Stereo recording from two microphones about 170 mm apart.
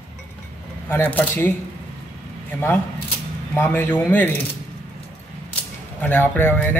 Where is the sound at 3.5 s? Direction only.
15° left (ahead or behind).